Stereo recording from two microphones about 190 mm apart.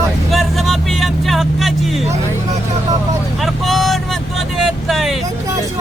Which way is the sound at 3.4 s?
Centre (ahead or behind).